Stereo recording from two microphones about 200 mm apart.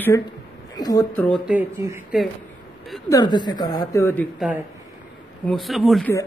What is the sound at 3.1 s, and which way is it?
A woman's voice, 20° left (ahead or behind).